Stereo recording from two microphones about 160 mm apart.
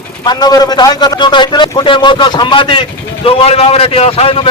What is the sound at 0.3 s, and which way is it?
A man's voice, 25° left (ahead or behind).